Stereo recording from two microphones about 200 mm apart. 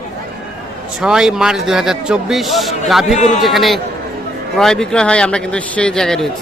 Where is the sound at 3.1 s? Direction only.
35° left (ahead or behind).